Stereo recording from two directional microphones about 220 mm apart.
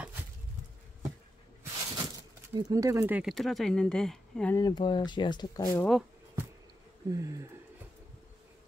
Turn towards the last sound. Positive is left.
turn(degrees=-15)  # may be behind; listen again after turning